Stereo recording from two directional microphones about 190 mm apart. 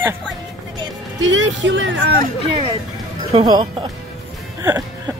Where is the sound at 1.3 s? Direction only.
75° right (ahead or behind).